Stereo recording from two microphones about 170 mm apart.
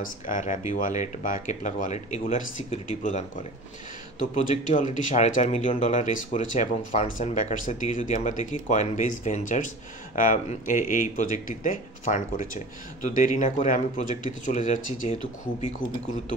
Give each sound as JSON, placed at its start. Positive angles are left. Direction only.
{"t": 0.0, "sound": "speech", "side_deg": 50}
{"t": 4.6, "sound": "speech", "side_deg": 45}